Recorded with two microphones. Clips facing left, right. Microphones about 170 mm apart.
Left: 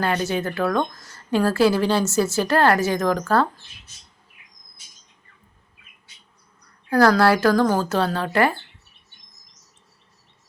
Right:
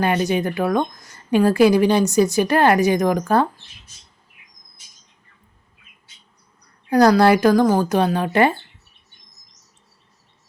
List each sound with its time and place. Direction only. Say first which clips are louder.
0.0 s a woman's voice: right 4 dB; 15° right (ahead or behind)
6.9 s a woman's voice: right 3 dB; 15° right (ahead or behind)